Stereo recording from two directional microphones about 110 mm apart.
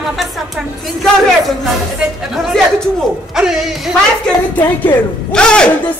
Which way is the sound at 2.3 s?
Centre (ahead or behind).